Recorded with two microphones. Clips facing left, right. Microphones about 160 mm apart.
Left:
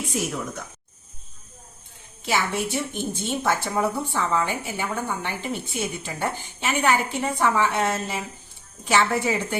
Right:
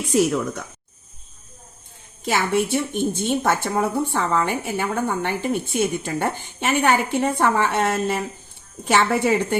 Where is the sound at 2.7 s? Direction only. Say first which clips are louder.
Right 6 dB; 55° right (ahead or behind).